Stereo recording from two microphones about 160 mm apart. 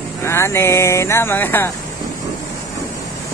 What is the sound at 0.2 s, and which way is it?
Speech, 15° left (ahead or behind).